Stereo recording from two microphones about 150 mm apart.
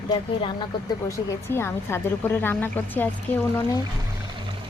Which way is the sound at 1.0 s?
20° left (ahead or behind).